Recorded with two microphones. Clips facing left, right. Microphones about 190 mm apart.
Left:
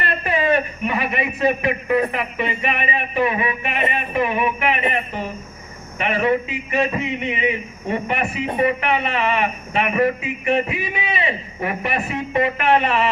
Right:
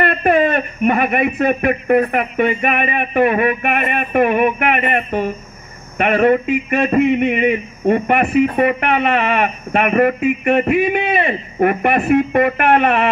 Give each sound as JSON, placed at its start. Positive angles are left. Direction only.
{"t": 0.0, "sound": "a man's voice", "side_deg": -55}